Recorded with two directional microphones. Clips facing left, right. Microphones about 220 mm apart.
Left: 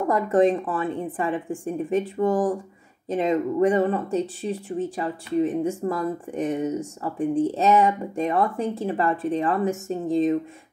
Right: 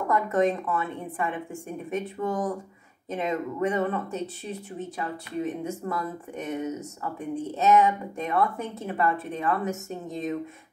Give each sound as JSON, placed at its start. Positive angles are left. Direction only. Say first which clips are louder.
{"t": 0.1, "sound": "speech", "louder": "left 4 dB", "side_deg": 30}